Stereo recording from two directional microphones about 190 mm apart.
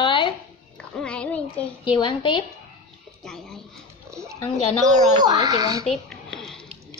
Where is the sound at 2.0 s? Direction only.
25° left (ahead or behind).